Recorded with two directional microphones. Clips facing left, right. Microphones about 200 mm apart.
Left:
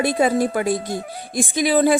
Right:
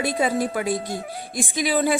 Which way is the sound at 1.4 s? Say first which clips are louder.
Left 5 dB; 45° left (ahead or behind).